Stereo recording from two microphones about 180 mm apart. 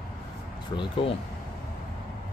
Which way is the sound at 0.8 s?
30° left (ahead or behind).